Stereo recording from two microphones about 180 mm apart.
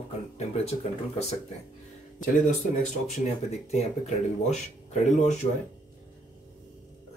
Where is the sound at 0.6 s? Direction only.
35° left (ahead or behind).